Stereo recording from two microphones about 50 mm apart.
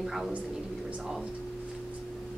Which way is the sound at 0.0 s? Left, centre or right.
Centre.